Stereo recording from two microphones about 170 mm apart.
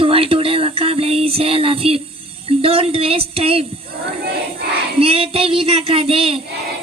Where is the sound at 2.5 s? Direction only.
35° right (ahead or behind).